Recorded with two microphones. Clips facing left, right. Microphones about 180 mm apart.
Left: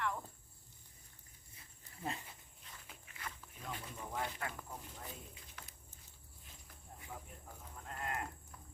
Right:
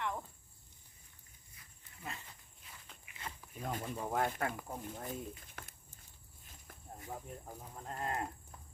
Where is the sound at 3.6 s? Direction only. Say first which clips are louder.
Right 8 dB; 50° right (ahead or behind).